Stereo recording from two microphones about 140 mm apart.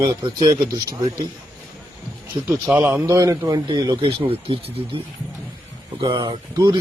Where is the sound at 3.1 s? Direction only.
25° right (ahead or behind).